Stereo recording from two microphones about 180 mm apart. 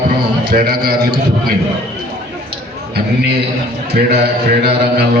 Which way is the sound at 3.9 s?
65° right (ahead or behind).